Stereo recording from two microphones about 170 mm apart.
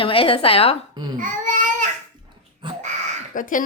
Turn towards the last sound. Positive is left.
turn(degrees=50)  # may be behind; listen again after turning